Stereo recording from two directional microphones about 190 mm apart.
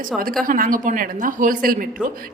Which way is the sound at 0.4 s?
45° right (ahead or behind).